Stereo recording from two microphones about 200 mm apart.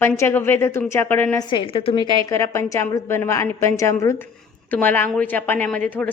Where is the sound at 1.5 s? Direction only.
25° left (ahead or behind).